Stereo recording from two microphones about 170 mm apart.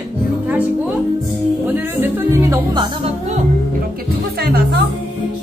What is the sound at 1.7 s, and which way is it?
Music, 10° right (ahead or behind).